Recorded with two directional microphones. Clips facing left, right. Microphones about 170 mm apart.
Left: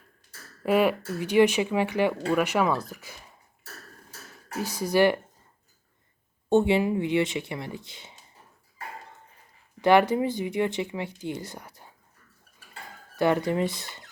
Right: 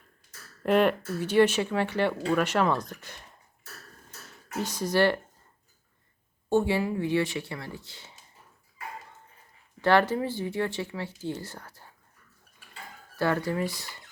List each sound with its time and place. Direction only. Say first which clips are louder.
0.6 s speech: even; 5° left (ahead or behind)
4.6 s speech: left 2 dB; 10° left (ahead or behind)
6.5 s speech: left 4 dB; 20° left (ahead or behind)
9.8 s speech: left 3 dB; 15° left (ahead or behind)
13.1 s speech: left 4 dB; 20° left (ahead or behind)